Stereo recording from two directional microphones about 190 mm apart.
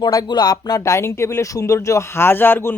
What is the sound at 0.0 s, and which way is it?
Speech, 20° left (ahead or behind).